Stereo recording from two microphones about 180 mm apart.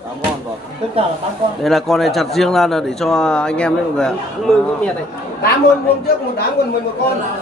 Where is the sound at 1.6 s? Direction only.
Centre (ahead or behind).